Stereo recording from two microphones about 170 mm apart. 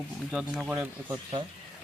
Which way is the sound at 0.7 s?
20° right (ahead or behind).